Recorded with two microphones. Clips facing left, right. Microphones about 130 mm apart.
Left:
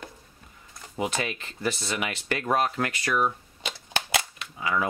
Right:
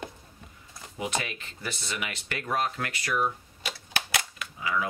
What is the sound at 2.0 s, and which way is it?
Speech, 50° left (ahead or behind).